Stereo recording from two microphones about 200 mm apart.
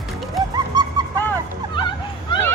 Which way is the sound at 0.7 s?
20° right (ahead or behind).